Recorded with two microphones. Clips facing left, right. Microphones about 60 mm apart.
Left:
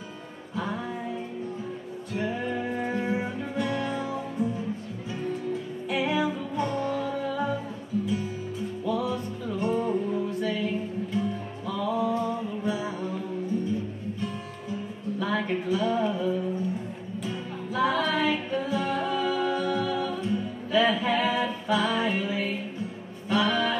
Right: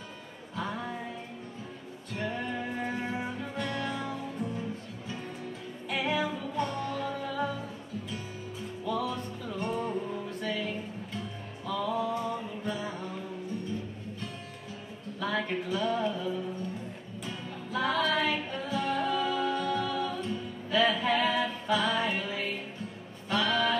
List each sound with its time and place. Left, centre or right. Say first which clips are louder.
0.6 s music: left 4 dB; centre
2.1 s music: left 4 dB; centre
5.9 s music: left 4 dB; centre
8.8 s music: left 3 dB; centre
14.2 s music: left 7 dB; centre